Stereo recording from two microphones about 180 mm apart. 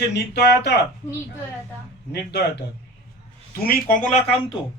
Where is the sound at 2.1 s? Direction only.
65° left (ahead or behind).